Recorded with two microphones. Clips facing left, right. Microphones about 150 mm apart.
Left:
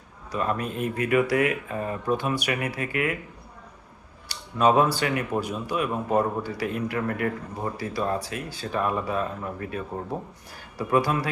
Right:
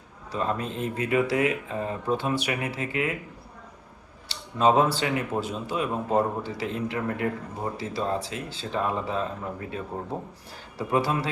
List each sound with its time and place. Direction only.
0.3 s speech: 25° right (ahead or behind)
4.3 s speech: 25° right (ahead or behind)
10.8 s speech: 25° right (ahead or behind)